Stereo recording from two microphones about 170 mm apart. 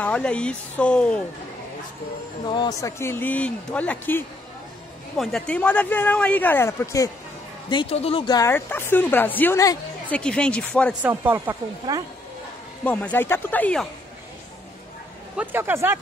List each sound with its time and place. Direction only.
0.0 s a woman's voice: 5° left (ahead or behind)
2.5 s speech: 25° left (ahead or behind)
3.0 s a woman's voice: 15° left (ahead or behind)
5.1 s a woman's voice: centre (ahead or behind); by 7.1 s 15° left (ahead or behind)
7.7 s a woman's voice: 35° left (ahead or behind); by 9.8 s 15° left (ahead or behind)
10.1 s a woman's voice: 5° left (ahead or behind)
11.0 s speech: 10° right (ahead or behind)
11.9 s speech: 25° right (ahead or behind)
12.8 s a woman's voice: 10° left (ahead or behind)
15.3 s speech: 10° right (ahead or behind)